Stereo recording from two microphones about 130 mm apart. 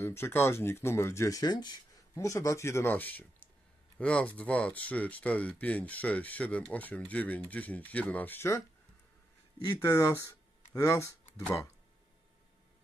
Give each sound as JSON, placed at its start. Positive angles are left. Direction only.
{"t": 0.0, "sound": "speech", "side_deg": 20}
{"t": 9.8, "sound": "speech", "side_deg": 20}